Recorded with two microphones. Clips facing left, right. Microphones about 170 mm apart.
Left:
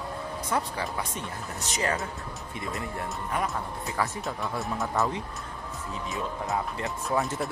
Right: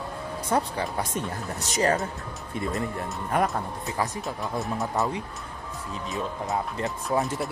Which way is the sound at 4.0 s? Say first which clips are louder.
Right 1 dB; 20° right (ahead or behind).